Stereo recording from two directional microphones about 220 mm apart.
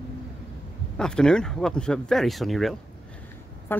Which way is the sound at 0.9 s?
5° left (ahead or behind).